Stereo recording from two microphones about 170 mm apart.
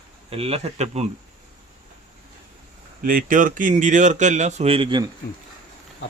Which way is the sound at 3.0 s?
55° right (ahead or behind).